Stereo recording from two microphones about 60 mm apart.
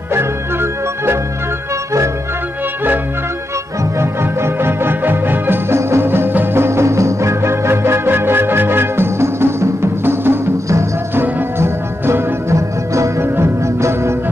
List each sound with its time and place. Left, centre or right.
0.1 s music: right
4.0 s music: right
5.8 s music: right